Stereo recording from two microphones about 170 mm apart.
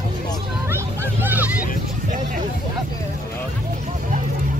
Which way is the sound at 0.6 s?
10° right (ahead or behind).